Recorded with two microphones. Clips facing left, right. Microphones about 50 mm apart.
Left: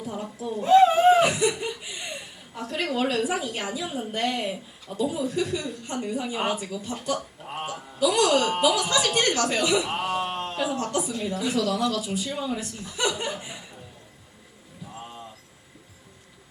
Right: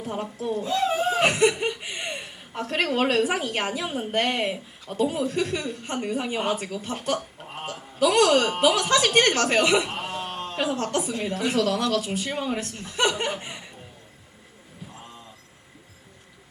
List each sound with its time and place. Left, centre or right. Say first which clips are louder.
0.0 s speech: right 3 dB; right
0.6 s a sound: left 9 dB; left
1.2 s a woman's voice: right 2 dB; right
9.9 s speech: left 5 dB; left
10.2 s a sound: left 2 dB; left
10.8 s speech: right 1 dB; right